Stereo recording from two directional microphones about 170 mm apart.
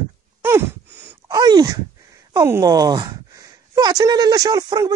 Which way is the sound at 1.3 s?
25° right (ahead or behind).